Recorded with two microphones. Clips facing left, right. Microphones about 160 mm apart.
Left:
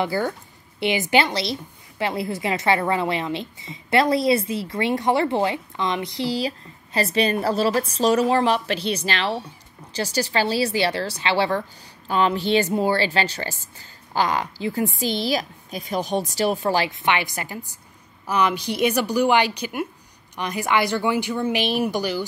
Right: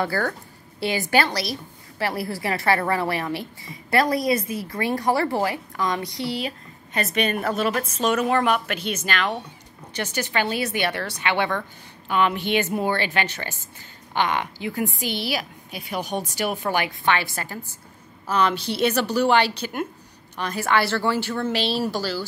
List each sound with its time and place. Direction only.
0.0 s a woman's voice: 15° left (ahead or behind)
17.0 s a woman's voice: 15° left (ahead or behind)